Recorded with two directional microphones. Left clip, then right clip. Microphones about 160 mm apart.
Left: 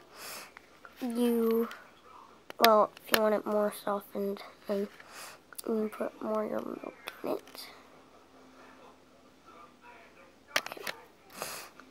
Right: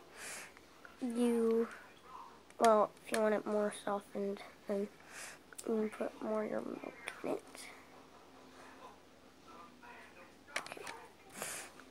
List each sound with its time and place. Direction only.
0.1 s snort: 30° left (ahead or behind)
1.1 s a sound: 30° left (ahead or behind)
2.5 s speech: 25° left (ahead or behind)
11.3 s snort: 25° left (ahead or behind)